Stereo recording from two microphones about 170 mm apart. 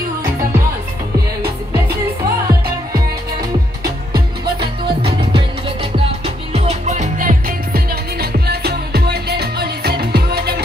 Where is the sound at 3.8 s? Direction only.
25° right (ahead or behind).